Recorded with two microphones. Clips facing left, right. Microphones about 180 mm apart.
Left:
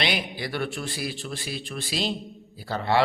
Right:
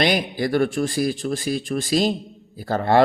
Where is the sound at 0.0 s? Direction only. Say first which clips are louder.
Right 8 dB; 45° right (ahead or behind).